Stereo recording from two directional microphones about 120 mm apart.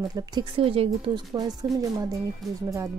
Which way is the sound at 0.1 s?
35° right (ahead or behind).